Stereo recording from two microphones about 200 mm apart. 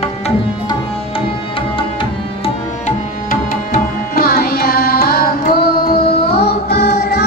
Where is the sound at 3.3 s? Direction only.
45° left (ahead or behind).